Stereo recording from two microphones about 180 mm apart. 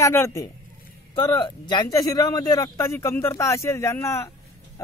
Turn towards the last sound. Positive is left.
turn(degrees=15)  # may be behind; listen again after turning